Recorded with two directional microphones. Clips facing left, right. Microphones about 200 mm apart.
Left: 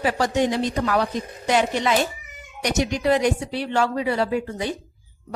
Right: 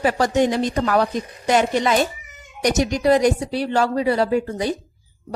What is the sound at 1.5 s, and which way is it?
A woman's voice, 45° right (ahead or behind).